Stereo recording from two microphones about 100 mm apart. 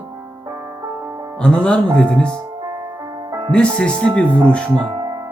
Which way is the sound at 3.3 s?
45° right (ahead or behind).